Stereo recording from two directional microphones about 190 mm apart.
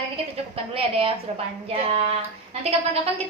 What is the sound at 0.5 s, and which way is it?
A woman's voice, 30° right (ahead or behind).